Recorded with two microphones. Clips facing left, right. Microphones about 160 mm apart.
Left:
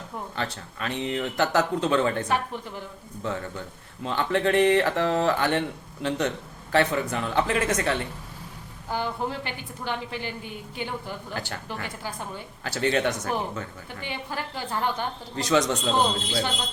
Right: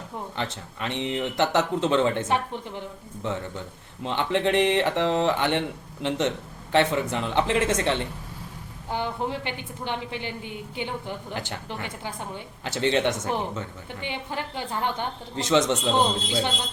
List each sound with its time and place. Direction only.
0.3 s speech: 20° right (ahead or behind)